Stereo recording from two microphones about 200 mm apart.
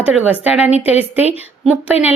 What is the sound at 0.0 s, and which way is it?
Speech, 5° right (ahead or behind).